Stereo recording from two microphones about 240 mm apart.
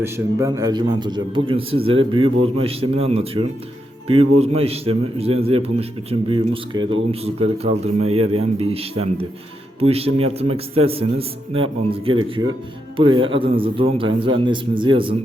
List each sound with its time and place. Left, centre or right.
0.0 s a man's voice: centre